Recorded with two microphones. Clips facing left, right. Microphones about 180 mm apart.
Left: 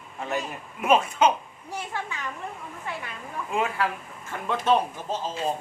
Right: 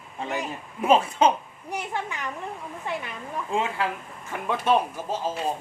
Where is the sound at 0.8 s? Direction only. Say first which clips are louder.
Right 1 dB; 30° right (ahead or behind).